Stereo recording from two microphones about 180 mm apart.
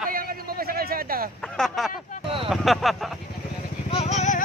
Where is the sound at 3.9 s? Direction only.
35° left (ahead or behind).